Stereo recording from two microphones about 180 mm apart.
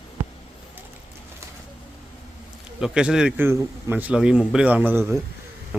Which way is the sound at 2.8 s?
5° right (ahead or behind).